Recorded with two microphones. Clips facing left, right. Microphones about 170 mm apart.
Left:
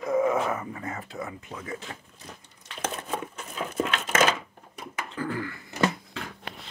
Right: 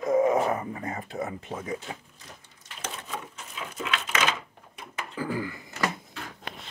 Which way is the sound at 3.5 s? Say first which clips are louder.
Left 5 dB; 45° left (ahead or behind).